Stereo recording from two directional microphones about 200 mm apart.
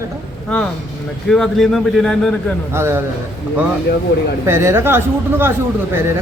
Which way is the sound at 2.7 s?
10° right (ahead or behind).